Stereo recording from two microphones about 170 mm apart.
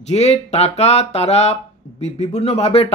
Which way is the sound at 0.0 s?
40° left (ahead or behind).